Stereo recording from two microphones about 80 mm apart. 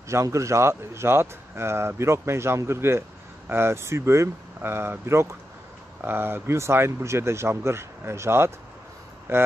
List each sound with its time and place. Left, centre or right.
0.1 s speech: right